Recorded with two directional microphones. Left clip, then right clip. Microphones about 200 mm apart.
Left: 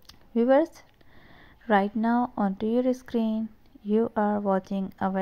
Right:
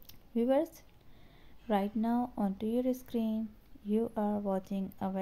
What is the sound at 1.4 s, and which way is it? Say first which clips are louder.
A woman's voice: left 9 dB; 15° left (ahead or behind).